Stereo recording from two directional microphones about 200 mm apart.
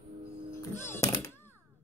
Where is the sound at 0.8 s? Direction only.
15° left (ahead or behind).